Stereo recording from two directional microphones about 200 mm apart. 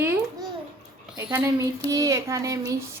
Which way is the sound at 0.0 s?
10° right (ahead or behind).